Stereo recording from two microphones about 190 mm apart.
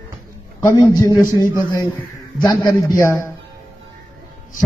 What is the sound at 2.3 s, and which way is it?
Speech, 20° left (ahead or behind).